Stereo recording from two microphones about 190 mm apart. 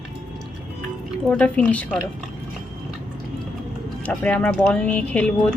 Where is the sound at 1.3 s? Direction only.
5° left (ahead or behind).